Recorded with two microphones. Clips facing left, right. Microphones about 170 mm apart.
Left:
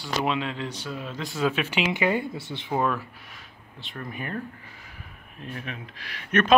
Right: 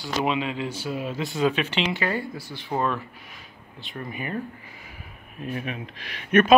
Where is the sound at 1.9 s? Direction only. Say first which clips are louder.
Left 2 dB; 20° left (ahead or behind).